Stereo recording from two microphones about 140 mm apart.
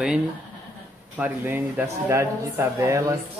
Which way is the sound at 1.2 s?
15° right (ahead or behind).